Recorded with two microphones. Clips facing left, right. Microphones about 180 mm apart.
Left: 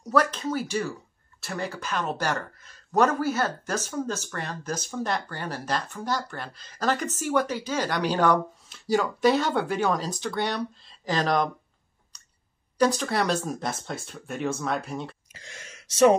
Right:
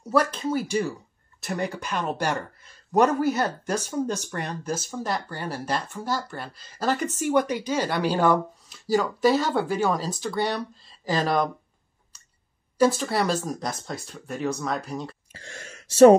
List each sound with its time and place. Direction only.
0.0 s speech: 10° right (ahead or behind)
12.7 s speech: 5° right (ahead or behind)
15.5 s speech: 40° right (ahead or behind)